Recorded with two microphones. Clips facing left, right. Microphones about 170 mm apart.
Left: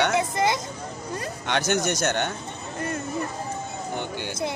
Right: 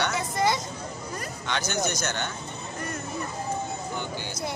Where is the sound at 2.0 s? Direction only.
55° left (ahead or behind).